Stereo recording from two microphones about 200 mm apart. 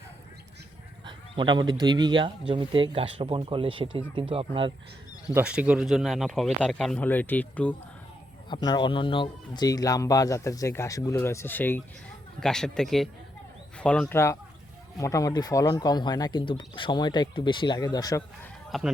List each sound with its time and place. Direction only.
1.0 s speech: 25° right (ahead or behind)
5.3 s speech: 5° right (ahead or behind)
8.4 s speech: 20° left (ahead or behind)
18.7 s speech: centre (ahead or behind)